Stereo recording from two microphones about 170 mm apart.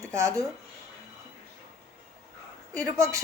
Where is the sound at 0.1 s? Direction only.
15° right (ahead or behind).